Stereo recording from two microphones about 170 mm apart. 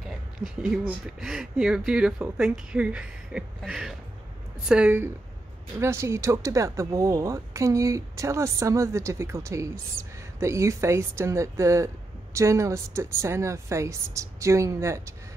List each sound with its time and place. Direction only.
1.2 s speech: centre (ahead or behind)